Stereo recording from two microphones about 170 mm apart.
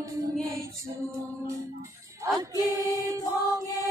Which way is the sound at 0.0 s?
20° right (ahead or behind).